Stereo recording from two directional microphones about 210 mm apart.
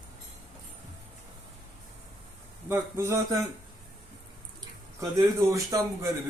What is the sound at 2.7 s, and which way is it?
Speech, 15° right (ahead or behind).